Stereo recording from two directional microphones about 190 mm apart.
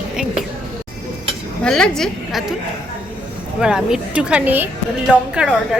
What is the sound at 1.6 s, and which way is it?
Speech, 5° left (ahead or behind).